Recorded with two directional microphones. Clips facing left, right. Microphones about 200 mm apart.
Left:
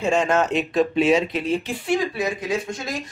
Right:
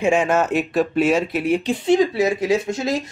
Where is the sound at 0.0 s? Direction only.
10° right (ahead or behind).